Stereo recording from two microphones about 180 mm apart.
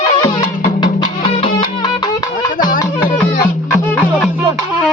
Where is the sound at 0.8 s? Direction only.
25° left (ahead or behind).